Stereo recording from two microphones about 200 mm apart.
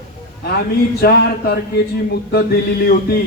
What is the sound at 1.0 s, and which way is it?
Speech, 50° left (ahead or behind).